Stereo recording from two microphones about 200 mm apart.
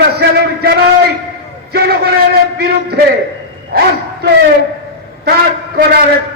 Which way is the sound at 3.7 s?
50° right (ahead or behind).